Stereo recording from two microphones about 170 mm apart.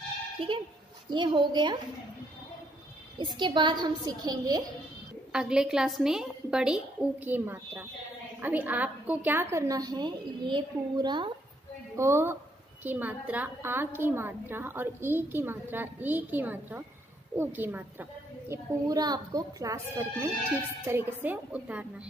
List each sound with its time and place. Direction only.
0.4 s speech: 30° right (ahead or behind)
3.3 s speech: 25° right (ahead or behind)
5.3 s a woman's voice: 5° right (ahead or behind); by 11.3 s 25° right (ahead or behind)
12.0 s a woman's voice: 15° right (ahead or behind)
18.5 s a woman's voice: 20° right (ahead or behind)